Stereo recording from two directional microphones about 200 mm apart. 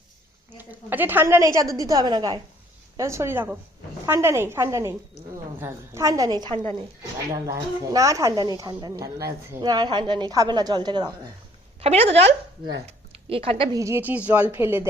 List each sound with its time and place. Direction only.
0.5 s a woman's voice: 10° right (ahead or behind); by 13.7 s 30° right (ahead or behind)
13.7 s speech: 15° right (ahead or behind)